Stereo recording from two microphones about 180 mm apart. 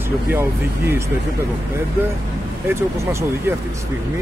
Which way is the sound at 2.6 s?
15° right (ahead or behind).